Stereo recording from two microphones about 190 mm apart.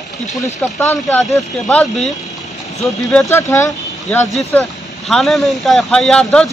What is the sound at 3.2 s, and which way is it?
Speech, 15° left (ahead or behind).